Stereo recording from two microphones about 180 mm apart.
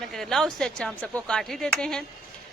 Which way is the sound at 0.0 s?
Centre (ahead or behind).